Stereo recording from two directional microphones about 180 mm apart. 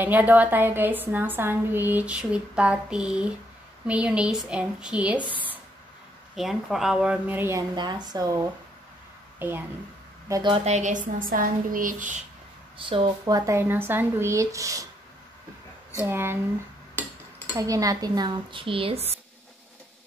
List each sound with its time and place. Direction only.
0.0 s a woman's voice: 10° right (ahead or behind)
5.3 s a sound: 10° right (ahead or behind)
6.3 s a woman's voice: centre (ahead or behind)
7.7 s cutlery: 25° right (ahead or behind)
9.4 s a woman's voice: 10° right (ahead or behind)
10.5 s speech: 40° right (ahead or behind)
12.7 s a woman's voice: 30° right (ahead or behind)
13.2 s a woman's voice: 15° right (ahead or behind)
16.0 s a woman's voice: 10° right (ahead or behind)
17.6 s cutlery: 20° right (ahead or behind)